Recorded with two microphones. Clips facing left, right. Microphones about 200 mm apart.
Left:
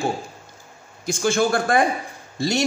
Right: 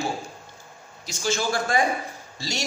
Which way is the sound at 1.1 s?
55° left (ahead or behind).